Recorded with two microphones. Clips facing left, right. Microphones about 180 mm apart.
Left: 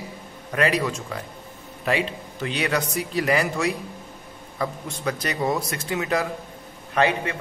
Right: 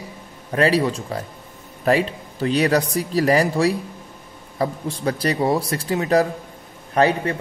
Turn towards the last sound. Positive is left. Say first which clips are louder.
# right 4 dB
turn(degrees=-40)  # may be behind; listen again after turning